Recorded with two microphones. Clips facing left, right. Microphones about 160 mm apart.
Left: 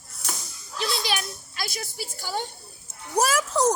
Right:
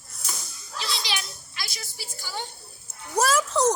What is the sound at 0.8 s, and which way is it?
A child's voice, 50° left (ahead or behind).